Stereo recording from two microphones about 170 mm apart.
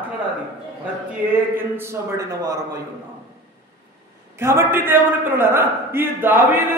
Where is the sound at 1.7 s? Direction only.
15° right (ahead or behind).